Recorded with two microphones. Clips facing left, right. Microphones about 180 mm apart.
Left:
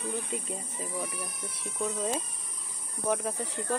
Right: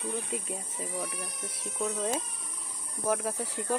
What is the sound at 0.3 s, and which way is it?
Speech, centre (ahead or behind).